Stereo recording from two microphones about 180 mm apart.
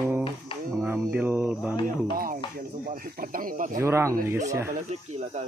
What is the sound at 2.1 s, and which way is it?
Speech, 50° right (ahead or behind).